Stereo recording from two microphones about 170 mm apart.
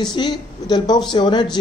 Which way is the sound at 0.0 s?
25° left (ahead or behind).